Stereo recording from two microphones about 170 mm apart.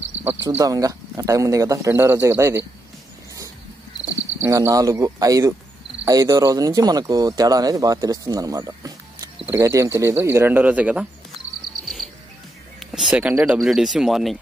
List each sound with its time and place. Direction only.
0.6 s speech: 20° right (ahead or behind)
4.4 s speech: 15° right (ahead or behind)
11.8 s cricket: centre (ahead or behind)
12.9 s a sound: 5° right (ahead or behind)
13.3 s speech: 10° right (ahead or behind)
13.6 s speech: centre (ahead or behind)